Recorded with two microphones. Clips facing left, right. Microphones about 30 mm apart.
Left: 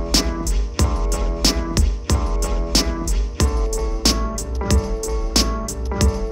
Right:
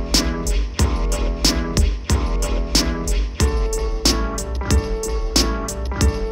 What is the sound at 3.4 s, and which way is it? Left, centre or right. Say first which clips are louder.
Music: right 2 dB; right.